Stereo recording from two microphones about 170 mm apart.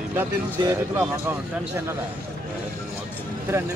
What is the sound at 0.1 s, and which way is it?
Speech, 15° right (ahead or behind).